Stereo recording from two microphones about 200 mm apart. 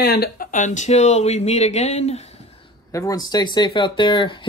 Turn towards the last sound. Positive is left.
turn(degrees=25)  # may be behind; listen again after turning